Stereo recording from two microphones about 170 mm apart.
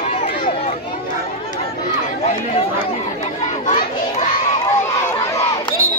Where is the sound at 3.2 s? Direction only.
45° left (ahead or behind).